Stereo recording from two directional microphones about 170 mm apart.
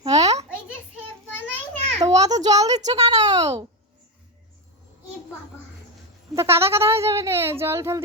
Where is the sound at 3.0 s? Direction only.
20° right (ahead or behind).